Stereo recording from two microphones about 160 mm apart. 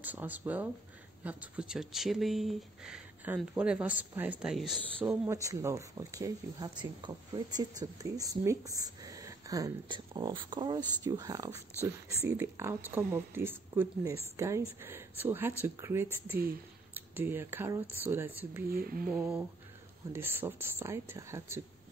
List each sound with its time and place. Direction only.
0.0 s speech: 10° right (ahead or behind)
5.0 s speech: 15° right (ahead or behind)
18.7 s speech: 65° right (ahead or behind)
19.1 s speech: 10° right (ahead or behind)